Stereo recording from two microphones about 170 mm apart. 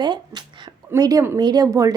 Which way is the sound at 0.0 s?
25° right (ahead or behind).